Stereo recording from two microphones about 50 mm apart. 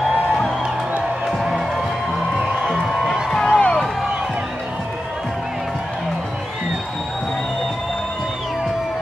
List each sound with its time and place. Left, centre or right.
2.3 s music: centre
3.4 s music: left